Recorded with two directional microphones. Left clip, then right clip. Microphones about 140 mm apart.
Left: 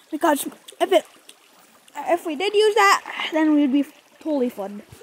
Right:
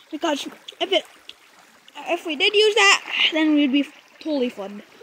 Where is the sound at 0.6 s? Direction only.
55° left (ahead or behind).